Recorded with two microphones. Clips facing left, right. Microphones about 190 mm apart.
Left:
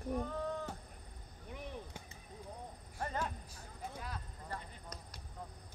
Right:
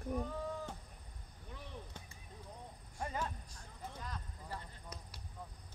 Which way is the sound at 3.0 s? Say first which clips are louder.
Left 1 dB; 10° right (ahead or behind).